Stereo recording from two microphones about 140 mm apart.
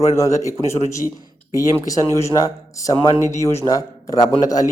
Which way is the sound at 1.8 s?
25° left (ahead or behind).